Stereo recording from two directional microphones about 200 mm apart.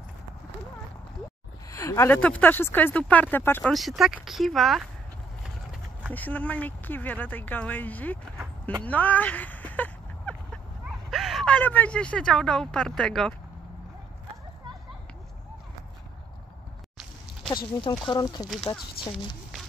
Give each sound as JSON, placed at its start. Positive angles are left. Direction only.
{"t": 1.7, "sound": "speech", "side_deg": 15}
{"t": 3.7, "sound": "speech", "side_deg": 0}
{"t": 5.4, "sound": "horse", "side_deg": -5}
{"t": 6.1, "sound": "speech", "side_deg": 10}
{"t": 8.8, "sound": "a sound", "side_deg": 10}
{"t": 11.1, "sound": "speech", "side_deg": 0}
{"t": 17.8, "sound": "speech", "side_deg": 25}